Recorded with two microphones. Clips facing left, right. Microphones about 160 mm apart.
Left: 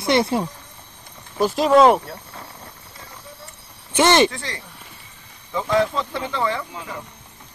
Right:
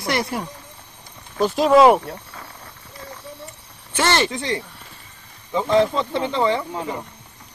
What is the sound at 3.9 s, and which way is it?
Speech, 20° left (ahead or behind).